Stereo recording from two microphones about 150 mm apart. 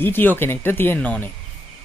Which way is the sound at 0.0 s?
15° left (ahead or behind).